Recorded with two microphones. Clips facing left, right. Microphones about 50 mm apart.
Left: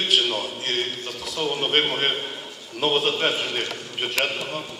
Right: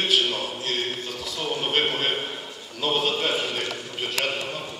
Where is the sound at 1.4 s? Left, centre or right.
Left.